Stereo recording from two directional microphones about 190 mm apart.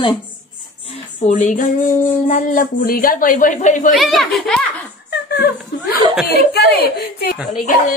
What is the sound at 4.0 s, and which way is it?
Speech, centre (ahead or behind).